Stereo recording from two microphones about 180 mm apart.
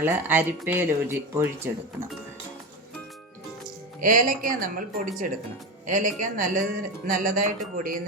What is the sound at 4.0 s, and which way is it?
Speech, 50° right (ahead or behind).